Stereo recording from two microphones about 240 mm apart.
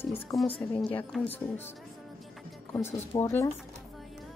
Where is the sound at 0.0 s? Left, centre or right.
Centre.